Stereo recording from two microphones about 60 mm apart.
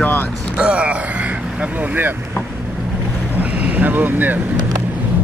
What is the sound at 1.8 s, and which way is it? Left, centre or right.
Speech, right.